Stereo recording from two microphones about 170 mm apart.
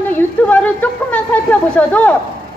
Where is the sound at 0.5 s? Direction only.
10° left (ahead or behind).